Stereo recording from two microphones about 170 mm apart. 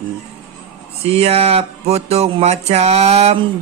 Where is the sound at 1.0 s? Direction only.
35° right (ahead or behind).